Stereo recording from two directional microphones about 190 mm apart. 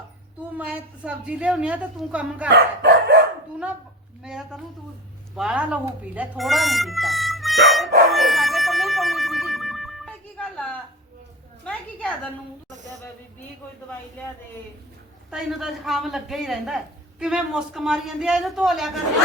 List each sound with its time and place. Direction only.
0.5 s a woman's voice: 5° right (ahead or behind)
2.5 s speech: 60° right (ahead or behind)
4.2 s speech: 5° right (ahead or behind)
8.1 s music: centre (ahead or behind)
11.6 s a sound: 5° left (ahead or behind)
15.3 s speech: centre (ahead or behind)